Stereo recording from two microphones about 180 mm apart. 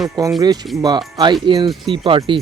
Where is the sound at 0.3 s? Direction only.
25° right (ahead or behind).